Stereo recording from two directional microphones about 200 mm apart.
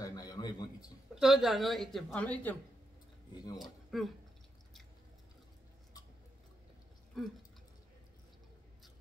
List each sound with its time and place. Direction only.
0.0 s a sound: 20° left (ahead or behind)
1.1 s a woman's voice: centre (ahead or behind)
3.5 s speech: centre (ahead or behind)
7.2 s a woman's voice: centre (ahead or behind)